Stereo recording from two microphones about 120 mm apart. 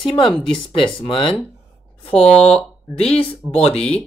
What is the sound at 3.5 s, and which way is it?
Speech, 60° left (ahead or behind).